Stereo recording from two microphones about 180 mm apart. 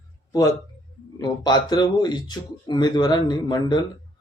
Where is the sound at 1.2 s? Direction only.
20° left (ahead or behind).